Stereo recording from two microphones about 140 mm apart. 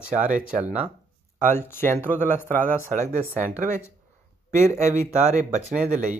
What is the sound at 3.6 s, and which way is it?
Speech, 60° right (ahead or behind).